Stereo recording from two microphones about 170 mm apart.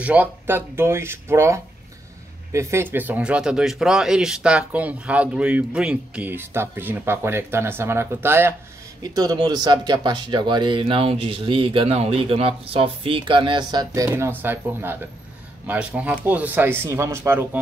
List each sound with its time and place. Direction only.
0.0 s speech: 10° right (ahead or behind)